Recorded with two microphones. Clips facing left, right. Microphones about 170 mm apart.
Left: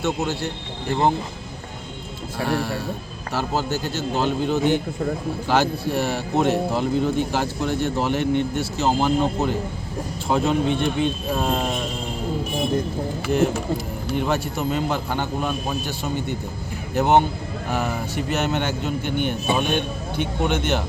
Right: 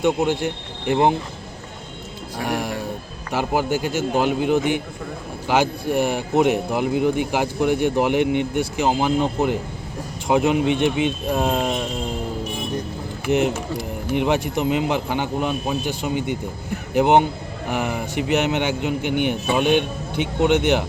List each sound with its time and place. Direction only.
0.0 s speech: 15° right (ahead or behind)
2.4 s speech: 15° right (ahead or behind)
14.1 s speech: 15° right (ahead or behind)